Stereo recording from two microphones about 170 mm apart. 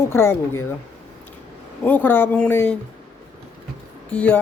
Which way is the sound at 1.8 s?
10° left (ahead or behind).